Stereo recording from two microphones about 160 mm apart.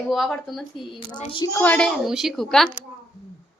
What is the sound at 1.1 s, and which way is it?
Speech, 30° left (ahead or behind).